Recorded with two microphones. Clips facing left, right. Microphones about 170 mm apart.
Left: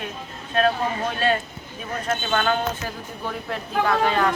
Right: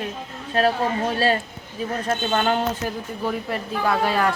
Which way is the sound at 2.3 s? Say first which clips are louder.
Right 1 dB; 20° right (ahead or behind).